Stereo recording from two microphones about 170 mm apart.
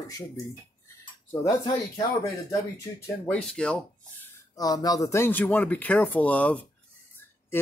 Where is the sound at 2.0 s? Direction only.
20° left (ahead or behind).